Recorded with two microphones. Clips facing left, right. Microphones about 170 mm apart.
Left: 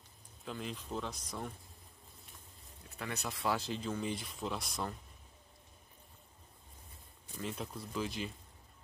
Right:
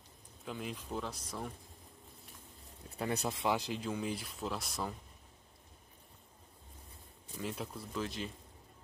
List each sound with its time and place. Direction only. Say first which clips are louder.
0.5 s speech: even; 10° right (ahead or behind)
3.0 s speech: right 6 dB; 30° right (ahead or behind)
3.4 s speech: even; 15° right (ahead or behind)
7.3 s speech: right 1 dB; 5° right (ahead or behind)